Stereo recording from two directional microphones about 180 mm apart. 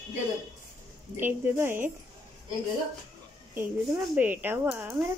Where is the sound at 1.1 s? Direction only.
10° right (ahead or behind).